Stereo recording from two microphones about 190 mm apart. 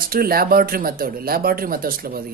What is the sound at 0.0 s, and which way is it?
Speech, 50° right (ahead or behind).